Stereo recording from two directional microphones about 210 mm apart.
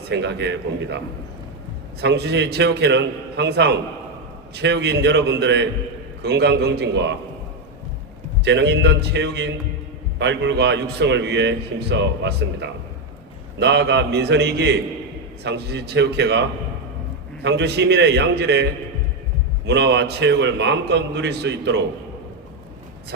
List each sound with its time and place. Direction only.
0.1 s a man's voice: 55° right (ahead or behind)
8.4 s a man's voice: 55° right (ahead or behind)